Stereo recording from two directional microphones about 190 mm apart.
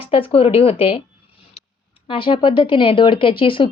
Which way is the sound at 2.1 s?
25° left (ahead or behind).